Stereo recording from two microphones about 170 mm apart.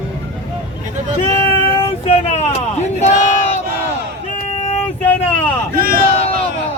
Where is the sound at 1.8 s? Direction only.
40° left (ahead or behind).